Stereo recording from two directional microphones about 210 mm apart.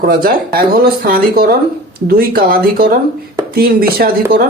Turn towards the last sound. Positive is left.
turn(degrees=-45)  # may be behind; listen again after turning